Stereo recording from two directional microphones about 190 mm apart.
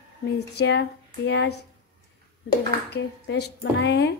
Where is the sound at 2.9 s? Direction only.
60° left (ahead or behind).